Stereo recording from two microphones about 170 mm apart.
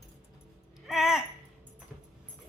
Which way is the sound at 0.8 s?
Centre (ahead or behind).